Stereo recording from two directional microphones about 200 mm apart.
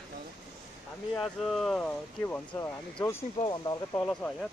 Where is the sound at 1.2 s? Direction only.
Centre (ahead or behind); by 4.0 s 20° left (ahead or behind).